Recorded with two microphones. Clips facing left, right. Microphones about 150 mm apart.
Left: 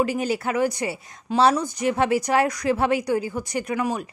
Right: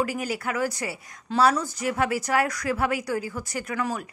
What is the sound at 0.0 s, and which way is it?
A woman's voice, 25° left (ahead or behind).